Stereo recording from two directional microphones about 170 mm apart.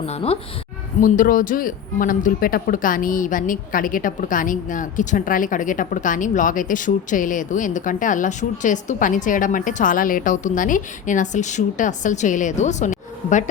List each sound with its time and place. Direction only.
0.0 s a woman's voice: 35° left (ahead or behind)
1.0 s speech: 50° left (ahead or behind)